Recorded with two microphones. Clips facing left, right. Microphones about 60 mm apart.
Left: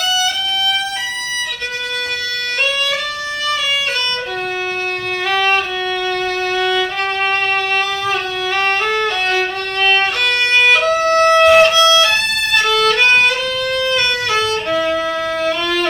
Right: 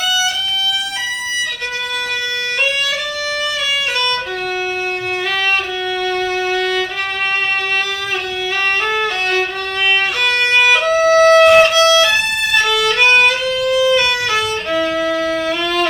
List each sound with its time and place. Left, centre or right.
5.3 s violin: centre
8.5 s violin: centre
11.7 s music: right
12.0 s violin: centre
13.7 s music: centre
14.7 s violin: centre